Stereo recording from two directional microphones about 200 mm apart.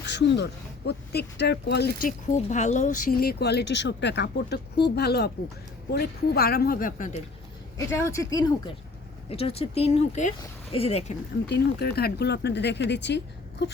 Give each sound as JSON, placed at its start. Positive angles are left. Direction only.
{"t": 0.0, "sound": "speech", "side_deg": 60}
{"t": 7.9, "sound": "speech", "side_deg": 15}
{"t": 9.3, "sound": "speech", "side_deg": 30}
{"t": 11.4, "sound": "speech", "side_deg": 55}